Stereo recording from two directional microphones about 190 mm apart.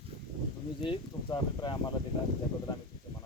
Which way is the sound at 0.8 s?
25° left (ahead or behind).